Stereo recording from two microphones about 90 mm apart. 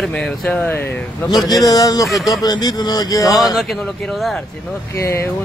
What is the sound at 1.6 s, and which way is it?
Speech, 40° left (ahead or behind).